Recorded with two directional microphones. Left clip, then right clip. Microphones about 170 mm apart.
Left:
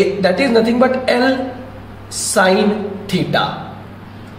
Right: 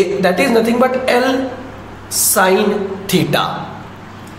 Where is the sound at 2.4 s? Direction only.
15° right (ahead or behind).